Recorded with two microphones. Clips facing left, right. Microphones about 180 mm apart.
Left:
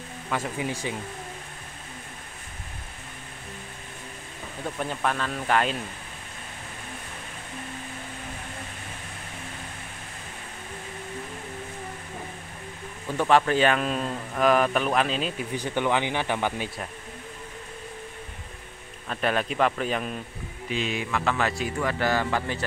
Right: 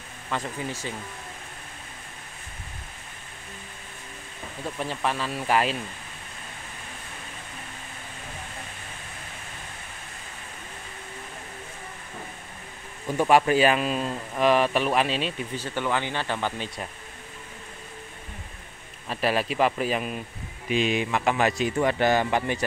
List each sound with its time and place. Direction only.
0.3 s speech: 10° left (ahead or behind)
4.7 s speech: 5° right (ahead or behind)
13.2 s speech: 10° right (ahead or behind)
15.5 s speech: 15° left (ahead or behind)
19.0 s speech: 5° right (ahead or behind)
20.7 s speech: 15° right (ahead or behind)